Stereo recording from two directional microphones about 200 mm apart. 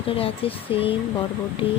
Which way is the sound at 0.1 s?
30° left (ahead or behind).